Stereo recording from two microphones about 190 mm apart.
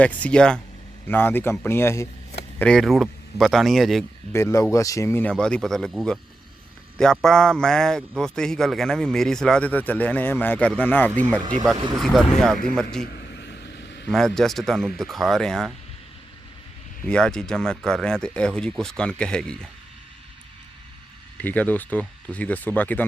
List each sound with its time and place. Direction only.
0.0 s a man's voice: 5° left (ahead or behind)
4.3 s a man's voice: 15° left (ahead or behind)
13.1 s vehicle: 60° left (ahead or behind)
14.1 s a man's voice: centre (ahead or behind)
17.1 s a man's voice: 5° left (ahead or behind)
21.3 s speech: 10° left (ahead or behind)